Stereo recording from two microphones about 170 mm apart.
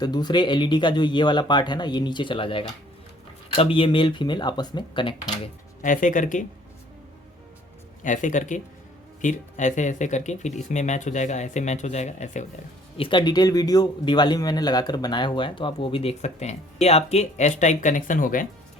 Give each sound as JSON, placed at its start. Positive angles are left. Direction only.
{"t": 0.0, "sound": "a man's voice", "side_deg": 25}
{"t": 5.8, "sound": "speech", "side_deg": 50}
{"t": 8.0, "sound": "speech", "side_deg": 45}
{"t": 13.0, "sound": "a man's voice", "side_deg": 30}